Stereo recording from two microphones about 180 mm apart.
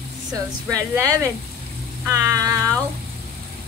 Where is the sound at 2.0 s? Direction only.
15° right (ahead or behind).